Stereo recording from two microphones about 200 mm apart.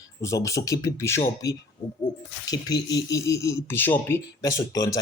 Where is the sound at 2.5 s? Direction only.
20° left (ahead or behind).